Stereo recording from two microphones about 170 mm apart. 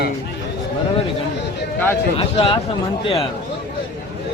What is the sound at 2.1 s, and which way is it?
Speech, 35° left (ahead or behind).